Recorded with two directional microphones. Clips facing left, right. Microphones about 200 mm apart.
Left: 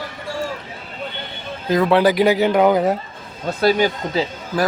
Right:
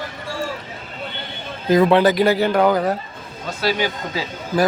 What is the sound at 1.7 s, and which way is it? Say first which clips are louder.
Speech: right 1 dB; centre (ahead or behind).